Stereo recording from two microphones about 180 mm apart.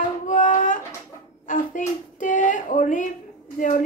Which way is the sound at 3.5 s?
45° left (ahead or behind).